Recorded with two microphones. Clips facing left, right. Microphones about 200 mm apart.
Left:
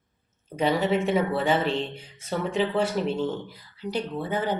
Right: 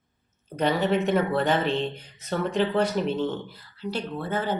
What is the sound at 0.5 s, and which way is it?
Speech, 10° left (ahead or behind).